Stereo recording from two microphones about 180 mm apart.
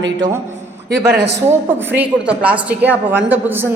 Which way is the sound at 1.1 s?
70° right (ahead or behind).